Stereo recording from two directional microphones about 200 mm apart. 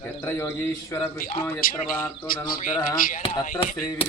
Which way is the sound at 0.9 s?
15° left (ahead or behind).